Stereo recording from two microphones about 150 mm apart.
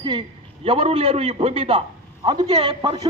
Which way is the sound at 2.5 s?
40° right (ahead or behind).